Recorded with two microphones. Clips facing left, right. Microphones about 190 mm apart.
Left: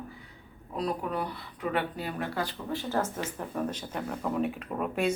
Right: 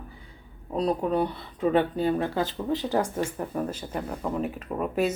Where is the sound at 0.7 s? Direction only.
25° right (ahead or behind).